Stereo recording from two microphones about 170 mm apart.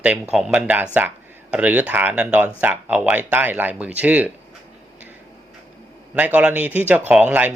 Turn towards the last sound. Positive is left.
turn(degrees=-10)  # may be behind; listen again after turning